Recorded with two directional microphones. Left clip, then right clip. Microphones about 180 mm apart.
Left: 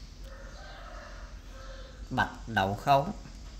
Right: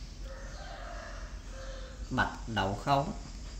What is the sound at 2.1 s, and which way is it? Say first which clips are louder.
Speech: left 2 dB; 50° left (ahead or behind).